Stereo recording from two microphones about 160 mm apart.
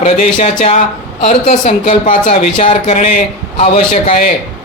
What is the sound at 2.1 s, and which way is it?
Speech, 50° left (ahead or behind).